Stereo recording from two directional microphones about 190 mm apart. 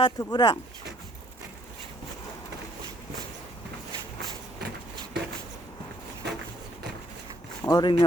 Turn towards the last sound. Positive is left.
turn(degrees=20)  # may be behind; listen again after turning